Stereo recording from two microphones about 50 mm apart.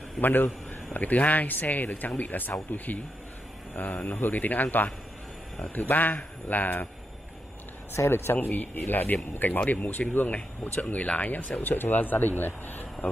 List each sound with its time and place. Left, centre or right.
0.2 s a man's voice: left
8.1 s speech: left
8.4 s speech: left
11.6 s speech: left